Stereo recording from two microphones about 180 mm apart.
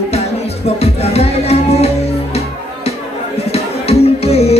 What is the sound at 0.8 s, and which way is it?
Music, 35° left (ahead or behind).